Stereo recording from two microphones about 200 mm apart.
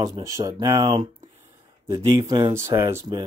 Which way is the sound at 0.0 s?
15° right (ahead or behind).